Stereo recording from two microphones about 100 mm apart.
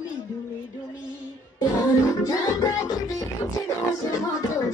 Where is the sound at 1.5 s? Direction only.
35° left (ahead or behind).